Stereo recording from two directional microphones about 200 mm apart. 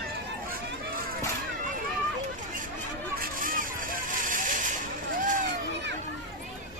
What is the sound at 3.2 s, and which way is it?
Vehicle, 45° right (ahead or behind).